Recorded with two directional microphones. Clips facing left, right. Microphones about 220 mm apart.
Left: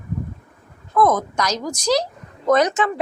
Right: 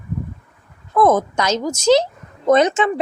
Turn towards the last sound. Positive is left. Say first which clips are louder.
# right 3 dB
turn(degrees=-25)  # may be behind; listen again after turning